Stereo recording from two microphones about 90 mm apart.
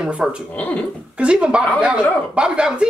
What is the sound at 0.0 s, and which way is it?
Speech, 10° right (ahead or behind).